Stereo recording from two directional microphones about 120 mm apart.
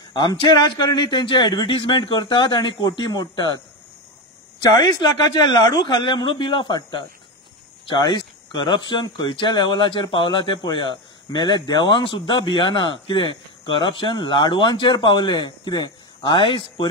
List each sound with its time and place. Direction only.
0.2 s speech: 40° left (ahead or behind)